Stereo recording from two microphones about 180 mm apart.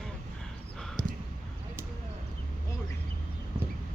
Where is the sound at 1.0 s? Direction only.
25° left (ahead or behind).